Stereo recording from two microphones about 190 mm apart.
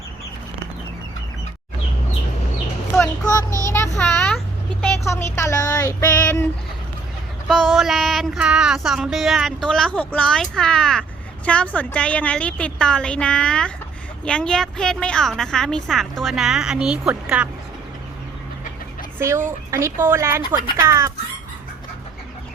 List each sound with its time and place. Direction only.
3.0 s speech: 20° left (ahead or behind)
3.9 s a sound: 5° left (ahead or behind)
4.8 s child singing: 10° left (ahead or behind)
7.4 s child singing: centre (ahead or behind)
19.2 s speech: 15° right (ahead or behind)